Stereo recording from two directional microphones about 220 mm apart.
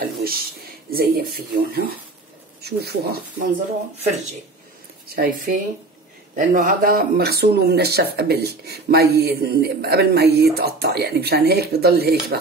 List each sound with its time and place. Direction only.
0.0 s a sound: 45° right (ahead or behind)
0.9 s speech: 45° right (ahead or behind)
5.0 s speech: 45° right (ahead or behind)